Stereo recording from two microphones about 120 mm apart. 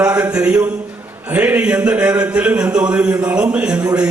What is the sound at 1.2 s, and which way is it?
A man's voice, 10° right (ahead or behind).